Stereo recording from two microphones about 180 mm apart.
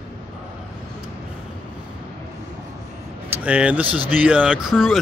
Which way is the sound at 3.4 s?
5° right (ahead or behind).